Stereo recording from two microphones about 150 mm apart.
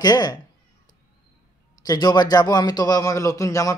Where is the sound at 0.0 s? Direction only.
25° left (ahead or behind).